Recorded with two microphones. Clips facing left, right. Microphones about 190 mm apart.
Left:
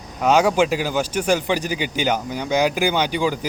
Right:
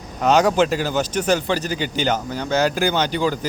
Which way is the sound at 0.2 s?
10° left (ahead or behind).